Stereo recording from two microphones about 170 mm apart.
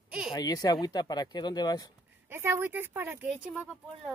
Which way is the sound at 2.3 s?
15° right (ahead or behind).